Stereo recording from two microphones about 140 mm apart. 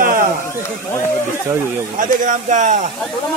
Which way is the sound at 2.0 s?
70° right (ahead or behind).